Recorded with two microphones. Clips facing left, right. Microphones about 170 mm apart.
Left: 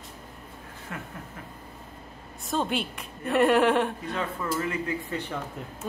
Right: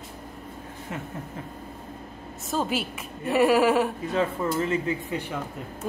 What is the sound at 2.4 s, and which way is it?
A woman's voice, 5° right (ahead or behind).